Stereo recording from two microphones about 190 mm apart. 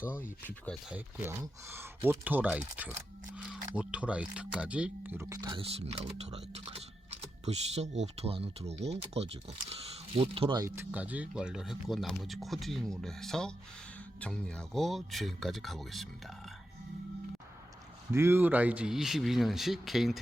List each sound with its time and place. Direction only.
0.4 s speech: 10° left (ahead or behind)
0.9 s speech: 10° right (ahead or behind); by 10.7 s 25° right (ahead or behind)
10.7 s speech: 10° right (ahead or behind)
18.1 s speech: 15° right (ahead or behind)